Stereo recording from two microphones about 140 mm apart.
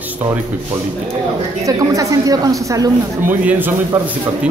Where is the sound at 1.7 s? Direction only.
25° right (ahead or behind).